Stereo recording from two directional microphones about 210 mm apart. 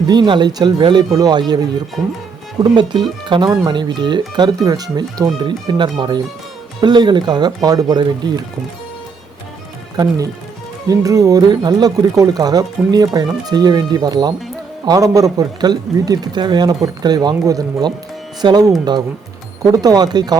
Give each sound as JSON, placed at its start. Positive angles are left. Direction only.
{"t": 0.1, "sound": "speech", "side_deg": -20}
{"t": 2.7, "sound": "speech", "side_deg": -20}
{"t": 10.8, "sound": "speech", "side_deg": -15}